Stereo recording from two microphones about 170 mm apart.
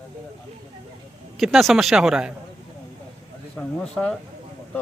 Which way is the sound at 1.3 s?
Centre (ahead or behind).